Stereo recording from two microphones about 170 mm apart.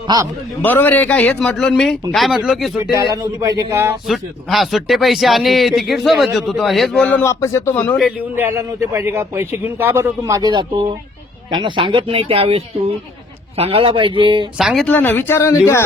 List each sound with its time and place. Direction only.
0.1 s speech: 25° right (ahead or behind)
0.6 s speech: 10° left (ahead or behind)
3.4 s a man's voice: 20° right (ahead or behind)
4.0 s speech: centre (ahead or behind)
7.9 s a man's voice: 5° right (ahead or behind); by 14.4 s 30° right (ahead or behind)
14.6 s speech: centre (ahead or behind)
14.8 s speech: 10° left (ahead or behind)